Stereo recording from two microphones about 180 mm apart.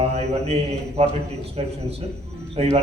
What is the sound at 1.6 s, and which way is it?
A man's voice, 35° right (ahead or behind).